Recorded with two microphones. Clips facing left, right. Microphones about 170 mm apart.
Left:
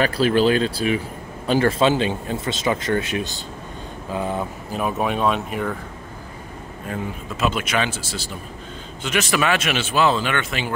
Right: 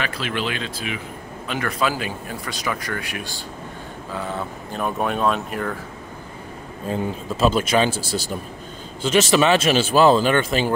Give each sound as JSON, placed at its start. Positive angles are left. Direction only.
{"t": 0.0, "sound": "a man's voice", "side_deg": 35}
{"t": 4.7, "sound": "speech", "side_deg": 0}
{"t": 6.9, "sound": "speech", "side_deg": -30}